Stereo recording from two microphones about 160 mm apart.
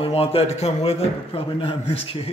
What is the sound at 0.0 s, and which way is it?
A man's voice, 35° left (ahead or behind).